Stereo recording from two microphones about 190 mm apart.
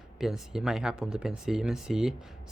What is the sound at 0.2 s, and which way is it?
Speech, centre (ahead or behind).